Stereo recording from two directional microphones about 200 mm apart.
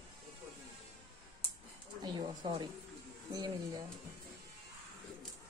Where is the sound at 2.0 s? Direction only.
20° right (ahead or behind).